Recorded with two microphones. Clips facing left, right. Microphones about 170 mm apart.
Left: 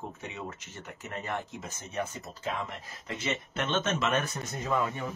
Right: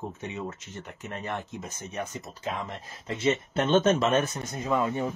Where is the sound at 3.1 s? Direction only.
30° right (ahead or behind).